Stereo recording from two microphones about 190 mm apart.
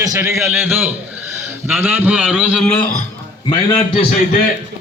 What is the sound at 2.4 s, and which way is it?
Speech, 5° left (ahead or behind).